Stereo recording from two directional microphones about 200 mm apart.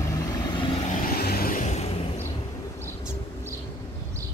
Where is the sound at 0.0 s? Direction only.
15° left (ahead or behind).